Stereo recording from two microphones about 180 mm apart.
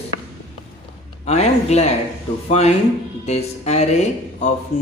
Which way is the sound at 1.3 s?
40° left (ahead or behind).